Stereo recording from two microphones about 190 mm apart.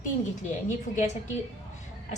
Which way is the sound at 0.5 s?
40° left (ahead or behind).